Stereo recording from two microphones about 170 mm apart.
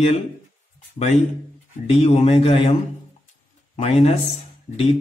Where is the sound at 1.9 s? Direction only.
40° left (ahead or behind).